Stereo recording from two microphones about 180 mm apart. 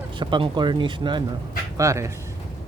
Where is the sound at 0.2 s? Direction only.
25° right (ahead or behind).